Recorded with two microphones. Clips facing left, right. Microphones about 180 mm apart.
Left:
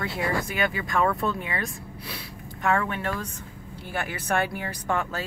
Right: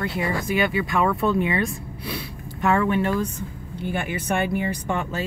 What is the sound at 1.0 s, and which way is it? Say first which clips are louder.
Speech: right 4 dB; 20° right (ahead or behind).